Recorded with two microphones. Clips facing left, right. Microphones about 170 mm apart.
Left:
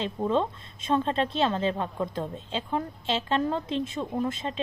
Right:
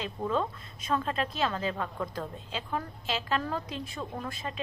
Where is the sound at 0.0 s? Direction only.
25° left (ahead or behind).